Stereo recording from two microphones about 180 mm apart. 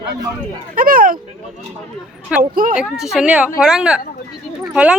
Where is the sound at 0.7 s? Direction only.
50° right (ahead or behind).